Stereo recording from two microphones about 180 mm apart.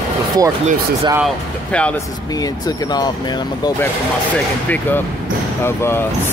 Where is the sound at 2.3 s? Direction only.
20° left (ahead or behind).